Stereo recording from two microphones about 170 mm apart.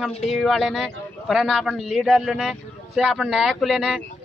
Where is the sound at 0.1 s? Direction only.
40° left (ahead or behind).